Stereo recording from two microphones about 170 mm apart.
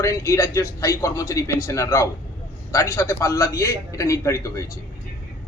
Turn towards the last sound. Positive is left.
turn(degrees=20)  # may be behind; listen again after turning